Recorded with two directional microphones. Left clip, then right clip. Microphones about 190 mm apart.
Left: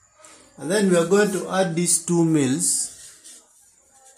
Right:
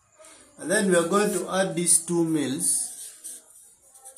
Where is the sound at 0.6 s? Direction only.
55° left (ahead or behind).